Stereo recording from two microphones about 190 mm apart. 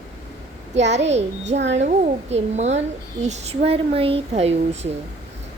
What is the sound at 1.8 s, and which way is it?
Speech, 35° right (ahead or behind).